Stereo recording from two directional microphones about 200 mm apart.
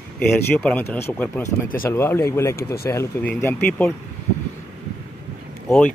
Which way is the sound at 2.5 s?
50° left (ahead or behind).